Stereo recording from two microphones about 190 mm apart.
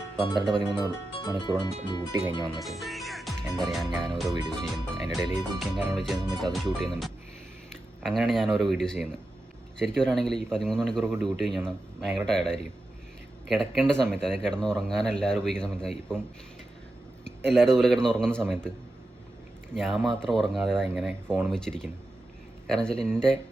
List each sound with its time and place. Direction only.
1.2 s speech: 20° left (ahead or behind)
2.6 s music: centre (ahead or behind)
4.2 s speech: centre (ahead or behind)
17.2 s speech: 5° left (ahead or behind)
19.7 s speech: centre (ahead or behind)